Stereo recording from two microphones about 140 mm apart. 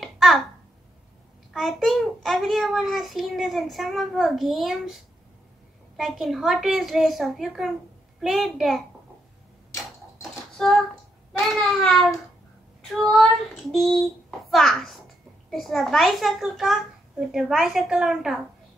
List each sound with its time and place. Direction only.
0.0 s babbling: centre (ahead or behind)
1.5 s a child's voice: centre (ahead or behind)
9.7 s tick-tock: 20° left (ahead or behind)
10.3 s a sound: centre (ahead or behind)
11.3 s a child's voice: 5° left (ahead or behind)
13.1 s a child's voice: centre (ahead or behind)